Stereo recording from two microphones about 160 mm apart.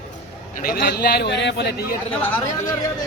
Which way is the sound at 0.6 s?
65° left (ahead or behind).